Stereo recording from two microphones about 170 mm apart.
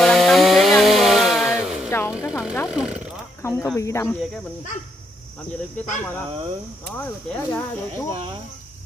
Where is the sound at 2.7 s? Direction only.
5° right (ahead or behind).